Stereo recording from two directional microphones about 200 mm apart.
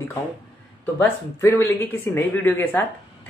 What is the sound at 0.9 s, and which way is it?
Speech, 10° left (ahead or behind).